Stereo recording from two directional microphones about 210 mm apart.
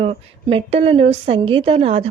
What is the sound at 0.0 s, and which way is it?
A woman's voice, 25° right (ahead or behind).